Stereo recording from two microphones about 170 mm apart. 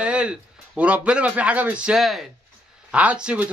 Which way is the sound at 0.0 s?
5° right (ahead or behind).